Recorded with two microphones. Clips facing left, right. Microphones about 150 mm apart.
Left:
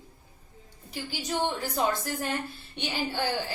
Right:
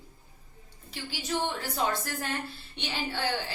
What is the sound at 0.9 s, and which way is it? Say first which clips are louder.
Speech: left 3 dB; 15° left (ahead or behind).